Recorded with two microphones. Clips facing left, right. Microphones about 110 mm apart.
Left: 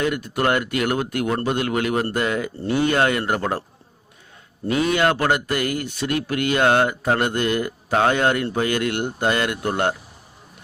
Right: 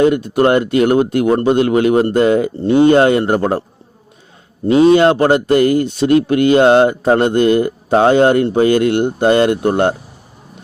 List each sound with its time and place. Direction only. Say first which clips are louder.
0.0 s speech: right 10 dB; 25° right (ahead or behind)
4.7 s speech: right 10 dB; 25° right (ahead or behind)